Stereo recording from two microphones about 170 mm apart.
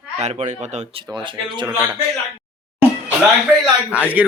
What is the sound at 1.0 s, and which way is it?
Speech, 25° right (ahead or behind).